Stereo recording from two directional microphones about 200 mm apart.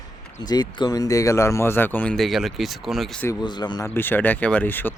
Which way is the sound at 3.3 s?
20° left (ahead or behind).